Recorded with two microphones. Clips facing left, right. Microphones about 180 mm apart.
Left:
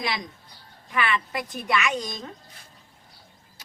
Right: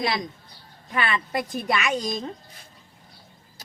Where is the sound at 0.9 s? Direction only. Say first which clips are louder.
Even; 35° right (ahead or behind).